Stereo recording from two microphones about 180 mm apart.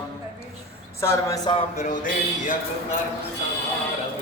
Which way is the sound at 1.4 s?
40° left (ahead or behind).